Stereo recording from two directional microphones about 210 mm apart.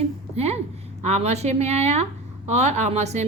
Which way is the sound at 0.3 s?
30° right (ahead or behind).